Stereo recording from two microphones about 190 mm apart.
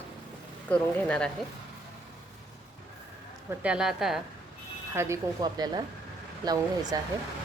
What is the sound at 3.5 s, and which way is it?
Speech, 5° right (ahead or behind).